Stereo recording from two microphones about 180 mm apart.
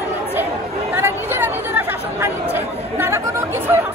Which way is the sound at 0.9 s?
10° right (ahead or behind).